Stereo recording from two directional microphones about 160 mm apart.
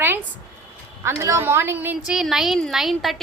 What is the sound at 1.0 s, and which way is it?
A woman's voice, 15° right (ahead or behind).